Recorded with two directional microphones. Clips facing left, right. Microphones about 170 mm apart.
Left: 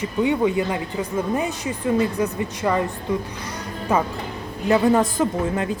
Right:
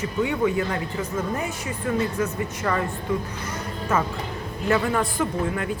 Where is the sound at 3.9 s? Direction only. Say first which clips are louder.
Left 3 dB; 15° left (ahead or behind).